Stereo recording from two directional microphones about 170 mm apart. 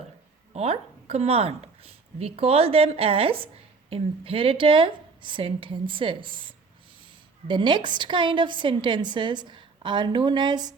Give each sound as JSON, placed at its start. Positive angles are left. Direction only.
{"t": 0.5, "sound": "a woman's voice", "side_deg": -35}